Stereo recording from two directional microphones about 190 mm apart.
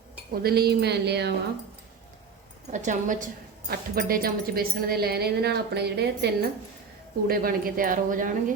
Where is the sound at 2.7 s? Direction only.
40° right (ahead or behind); by 6.3 s 60° right (ahead or behind).